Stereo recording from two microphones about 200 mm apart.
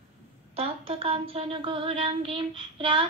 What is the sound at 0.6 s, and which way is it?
Child singing, 30° right (ahead or behind).